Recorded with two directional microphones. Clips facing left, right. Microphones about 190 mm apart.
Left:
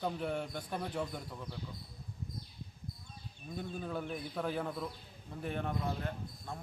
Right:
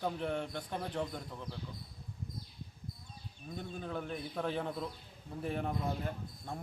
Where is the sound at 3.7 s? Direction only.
10° left (ahead or behind).